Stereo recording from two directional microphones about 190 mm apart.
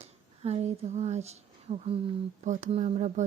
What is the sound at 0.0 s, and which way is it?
Speech, 35° right (ahead or behind).